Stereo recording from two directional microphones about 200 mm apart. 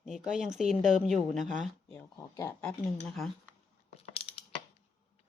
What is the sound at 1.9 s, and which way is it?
A woman's voice, 15° left (ahead or behind).